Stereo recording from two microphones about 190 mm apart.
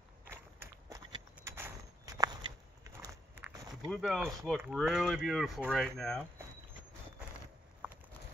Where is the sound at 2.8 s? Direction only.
15° right (ahead or behind).